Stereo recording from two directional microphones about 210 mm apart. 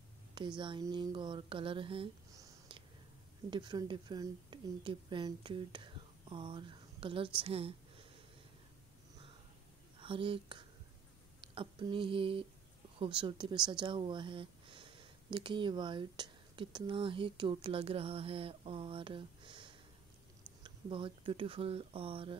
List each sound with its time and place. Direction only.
0.6 s a woman's voice: 20° right (ahead or behind)
9.9 s speech: 25° right (ahead or behind)